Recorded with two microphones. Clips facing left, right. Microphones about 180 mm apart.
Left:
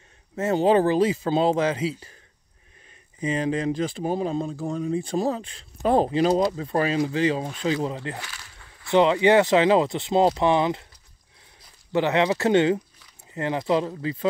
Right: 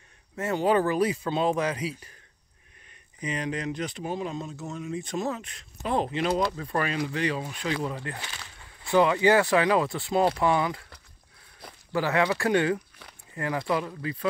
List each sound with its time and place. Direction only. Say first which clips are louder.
0.4 s speech: left 5 dB; 25° left (ahead or behind)
3.2 s speech: left 6 dB; 30° left (ahead or behind)
11.9 s speech: left 4 dB; 20° left (ahead or behind)